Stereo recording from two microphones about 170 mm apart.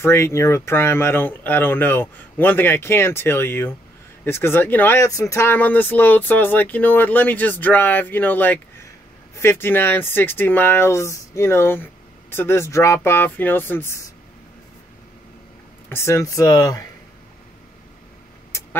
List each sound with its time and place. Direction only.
0.0 s speech: 15° left (ahead or behind)
15.9 s speech: 15° left (ahead or behind)